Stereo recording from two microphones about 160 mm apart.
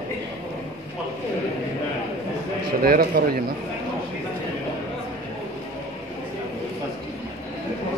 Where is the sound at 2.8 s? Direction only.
70° right (ahead or behind).